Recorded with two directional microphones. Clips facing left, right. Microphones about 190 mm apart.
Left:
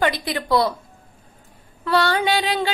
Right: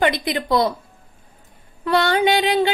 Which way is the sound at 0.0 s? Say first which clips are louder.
Right 2 dB; 20° right (ahead or behind).